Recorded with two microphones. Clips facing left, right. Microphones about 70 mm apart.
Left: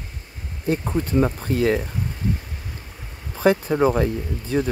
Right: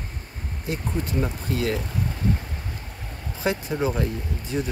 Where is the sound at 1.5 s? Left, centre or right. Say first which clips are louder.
Left 3 dB; right.